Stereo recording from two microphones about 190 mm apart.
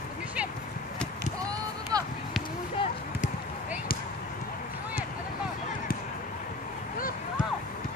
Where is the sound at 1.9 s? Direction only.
20° right (ahead or behind).